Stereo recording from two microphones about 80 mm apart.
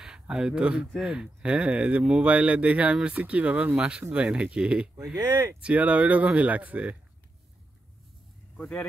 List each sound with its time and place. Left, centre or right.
0.0 s speech: centre
5.3 s speech: right
5.6 s speech: centre
8.5 s speech: centre